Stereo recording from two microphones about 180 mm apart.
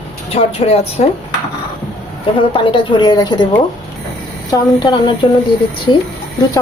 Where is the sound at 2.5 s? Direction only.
30° left (ahead or behind).